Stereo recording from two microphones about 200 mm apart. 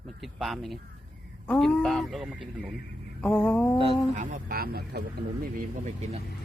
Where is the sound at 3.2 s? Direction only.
5° left (ahead or behind).